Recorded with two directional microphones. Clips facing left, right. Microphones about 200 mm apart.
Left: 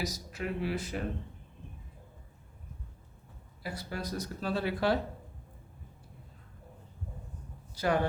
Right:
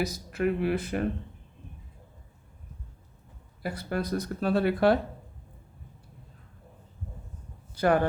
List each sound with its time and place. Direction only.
0.0 s speech: 55° right (ahead or behind)
3.6 s speech: 60° right (ahead or behind)
7.8 s speech: 55° right (ahead or behind)